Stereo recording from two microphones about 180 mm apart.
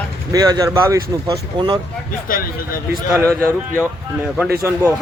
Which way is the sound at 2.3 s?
50° left (ahead or behind).